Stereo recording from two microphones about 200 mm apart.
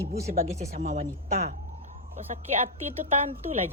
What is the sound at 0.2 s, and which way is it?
Speech, 15° right (ahead or behind).